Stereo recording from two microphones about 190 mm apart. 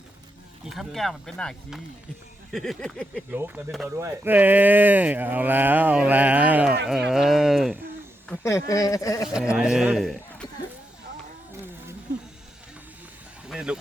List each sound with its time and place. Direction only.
0.6 s speech: centre (ahead or behind)
3.3 s speech: 10° right (ahead or behind)
8.3 s speech: 15° left (ahead or behind)
9.2 s a man's voice: centre (ahead or behind)
13.5 s a sound: 5° right (ahead or behind)